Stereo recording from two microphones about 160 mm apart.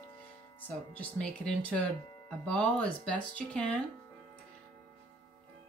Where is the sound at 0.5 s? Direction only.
10° left (ahead or behind).